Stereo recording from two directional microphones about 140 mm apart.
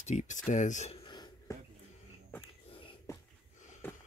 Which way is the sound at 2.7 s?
40° left (ahead or behind).